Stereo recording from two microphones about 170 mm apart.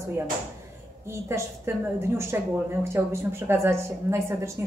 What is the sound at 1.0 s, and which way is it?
A woman's voice, 15° right (ahead or behind).